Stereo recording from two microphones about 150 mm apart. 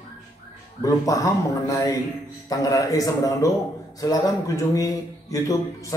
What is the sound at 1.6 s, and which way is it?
A man's voice, 25° left (ahead or behind).